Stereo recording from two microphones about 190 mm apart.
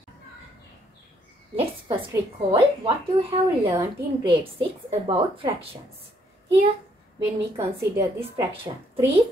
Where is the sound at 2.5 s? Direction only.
30° right (ahead or behind).